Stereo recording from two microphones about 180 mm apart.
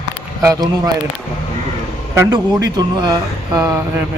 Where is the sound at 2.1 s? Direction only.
20° right (ahead or behind).